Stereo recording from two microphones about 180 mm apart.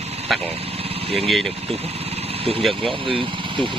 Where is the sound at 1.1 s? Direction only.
Centre (ahead or behind).